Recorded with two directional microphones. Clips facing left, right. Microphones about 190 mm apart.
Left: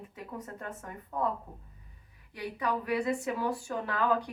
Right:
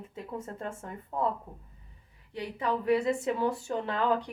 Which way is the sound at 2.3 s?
25° right (ahead or behind).